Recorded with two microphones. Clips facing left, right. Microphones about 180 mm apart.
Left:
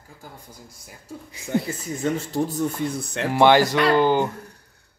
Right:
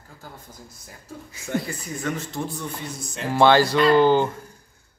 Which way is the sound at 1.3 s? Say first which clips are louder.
Left 3 dB; 20° left (ahead or behind).